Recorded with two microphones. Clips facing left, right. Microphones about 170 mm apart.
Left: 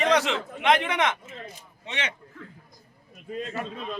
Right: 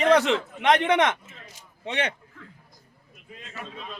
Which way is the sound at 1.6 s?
55° right (ahead or behind).